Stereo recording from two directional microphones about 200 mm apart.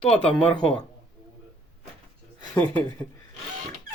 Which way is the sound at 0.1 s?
5° left (ahead or behind).